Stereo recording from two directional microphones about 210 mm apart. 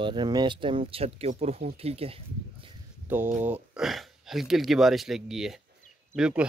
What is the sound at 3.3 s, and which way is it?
Speech, 5° right (ahead or behind).